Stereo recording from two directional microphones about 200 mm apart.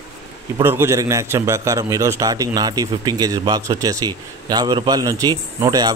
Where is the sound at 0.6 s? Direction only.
15° right (ahead or behind).